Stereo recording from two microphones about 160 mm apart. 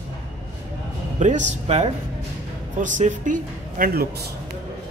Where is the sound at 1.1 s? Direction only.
45° right (ahead or behind); by 4.3 s 80° right.